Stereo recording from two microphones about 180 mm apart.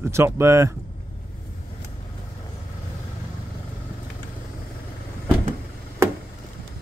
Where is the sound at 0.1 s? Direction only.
15° right (ahead or behind).